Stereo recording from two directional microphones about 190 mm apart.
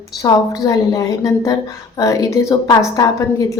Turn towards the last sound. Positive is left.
turn(degrees=15)  # may be behind; listen again after turning